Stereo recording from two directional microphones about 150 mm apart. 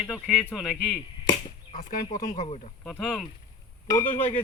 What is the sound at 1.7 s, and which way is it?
Speech, 55° left (ahead or behind).